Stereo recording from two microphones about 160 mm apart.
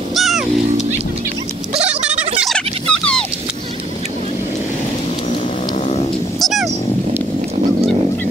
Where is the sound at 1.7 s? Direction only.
40° right (ahead or behind).